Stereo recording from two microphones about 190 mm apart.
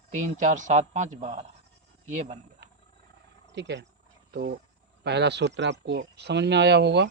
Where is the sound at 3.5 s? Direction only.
65° right (ahead or behind).